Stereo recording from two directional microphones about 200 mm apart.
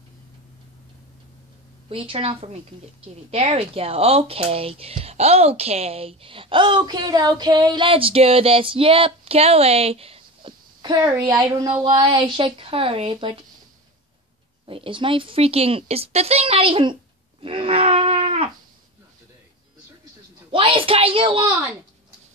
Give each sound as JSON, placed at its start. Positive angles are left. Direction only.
{"t": 1.9, "sound": "speech", "side_deg": -25}
{"t": 14.7, "sound": "speech", "side_deg": -25}
{"t": 17.4, "sound": "a sound", "side_deg": -25}
{"t": 20.5, "sound": "speech", "side_deg": -25}